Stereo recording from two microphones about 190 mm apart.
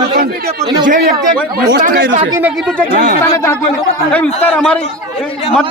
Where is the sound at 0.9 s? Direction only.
45° right (ahead or behind).